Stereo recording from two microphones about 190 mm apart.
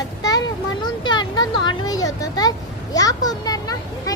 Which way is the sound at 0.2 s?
20° left (ahead or behind).